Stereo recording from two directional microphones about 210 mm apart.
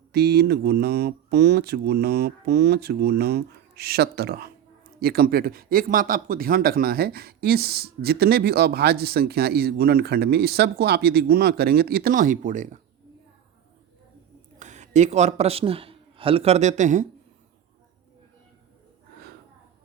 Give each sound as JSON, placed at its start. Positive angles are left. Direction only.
{"t": 0.1, "sound": "speech", "side_deg": -50}
{"t": 14.6, "sound": "a man's voice", "side_deg": -35}